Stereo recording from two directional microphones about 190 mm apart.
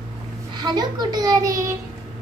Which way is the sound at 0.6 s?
20° right (ahead or behind).